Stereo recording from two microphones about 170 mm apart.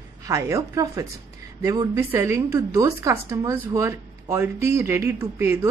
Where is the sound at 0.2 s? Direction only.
20° right (ahead or behind).